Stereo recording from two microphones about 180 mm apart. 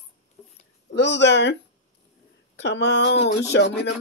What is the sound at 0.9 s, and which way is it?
Speech, 75° left (ahead or behind).